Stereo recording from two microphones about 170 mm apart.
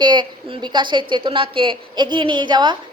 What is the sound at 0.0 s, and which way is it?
A woman's voice, 25° right (ahead or behind).